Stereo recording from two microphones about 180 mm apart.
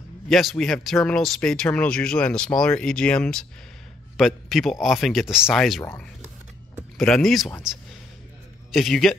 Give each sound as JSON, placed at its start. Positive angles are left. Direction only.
{"t": 0.3, "sound": "speech", "side_deg": 0}
{"t": 5.8, "sound": "speech", "side_deg": 10}
{"t": 6.7, "sound": "speech", "side_deg": 0}
{"t": 8.7, "sound": "speech", "side_deg": 0}